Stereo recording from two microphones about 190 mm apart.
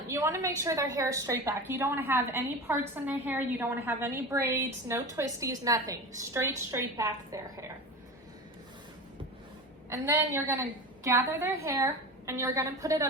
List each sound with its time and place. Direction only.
0.1 s a woman's voice: 15° right (ahead or behind)
9.9 s a woman's voice: 10° right (ahead or behind)